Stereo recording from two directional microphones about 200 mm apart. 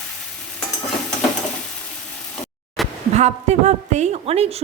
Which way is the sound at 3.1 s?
35° right (ahead or behind).